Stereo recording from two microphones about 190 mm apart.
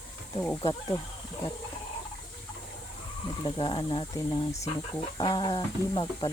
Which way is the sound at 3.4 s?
25° left (ahead or behind).